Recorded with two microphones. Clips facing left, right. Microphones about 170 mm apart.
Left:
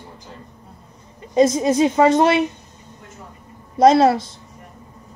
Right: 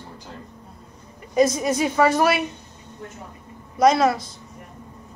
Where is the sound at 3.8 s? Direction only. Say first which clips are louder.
Left 4 dB; 30° left (ahead or behind).